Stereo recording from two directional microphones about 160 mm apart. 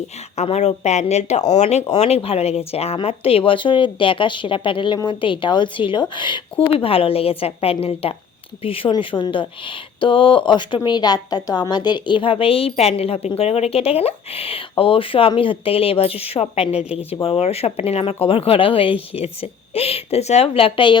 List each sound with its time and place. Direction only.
0.3 s speech: 45° left (ahead or behind)